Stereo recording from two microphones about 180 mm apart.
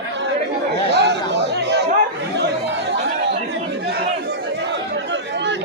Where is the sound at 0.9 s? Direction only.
70° right (ahead or behind).